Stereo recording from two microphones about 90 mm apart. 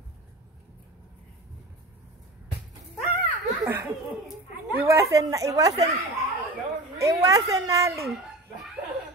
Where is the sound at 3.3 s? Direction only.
20° right (ahead or behind).